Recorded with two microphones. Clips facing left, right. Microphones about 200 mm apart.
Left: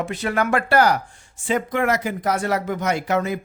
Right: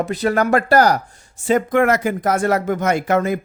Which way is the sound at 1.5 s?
50° right (ahead or behind).